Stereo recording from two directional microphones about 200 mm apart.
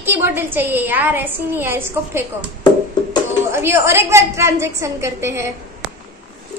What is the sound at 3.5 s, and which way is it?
A woman's voice, 10° right (ahead or behind).